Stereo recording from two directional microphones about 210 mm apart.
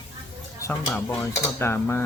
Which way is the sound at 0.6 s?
15° left (ahead or behind).